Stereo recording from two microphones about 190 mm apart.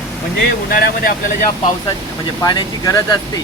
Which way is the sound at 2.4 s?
20° left (ahead or behind).